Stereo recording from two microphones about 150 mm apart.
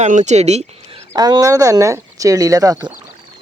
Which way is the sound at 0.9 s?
25° right (ahead or behind).